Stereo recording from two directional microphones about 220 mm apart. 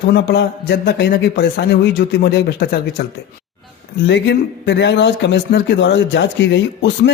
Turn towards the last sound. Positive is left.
turn(degrees=50)  # may be behind; listen again after turning